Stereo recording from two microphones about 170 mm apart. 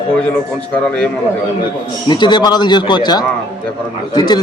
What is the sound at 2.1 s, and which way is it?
A man's voice, 25° left (ahead or behind).